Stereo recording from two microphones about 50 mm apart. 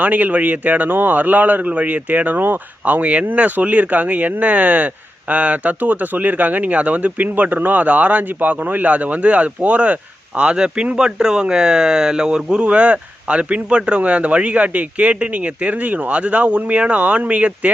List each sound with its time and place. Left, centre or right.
0.0 s speech: right